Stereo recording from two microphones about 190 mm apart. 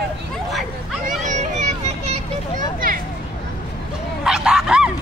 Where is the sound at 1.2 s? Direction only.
40° right (ahead or behind).